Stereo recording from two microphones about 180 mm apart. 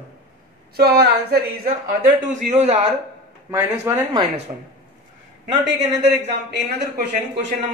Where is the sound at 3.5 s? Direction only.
15° right (ahead or behind).